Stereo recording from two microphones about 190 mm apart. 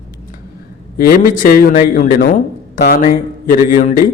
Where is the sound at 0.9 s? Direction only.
50° left (ahead or behind).